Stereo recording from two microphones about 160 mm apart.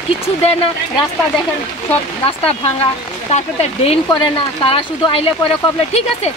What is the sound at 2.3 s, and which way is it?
Speech, 35° left (ahead or behind).